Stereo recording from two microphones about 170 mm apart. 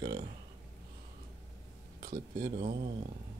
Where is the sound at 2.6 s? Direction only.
25° right (ahead or behind).